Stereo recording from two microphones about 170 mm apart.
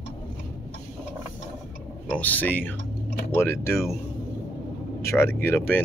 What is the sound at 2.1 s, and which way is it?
Speech, 10° left (ahead or behind).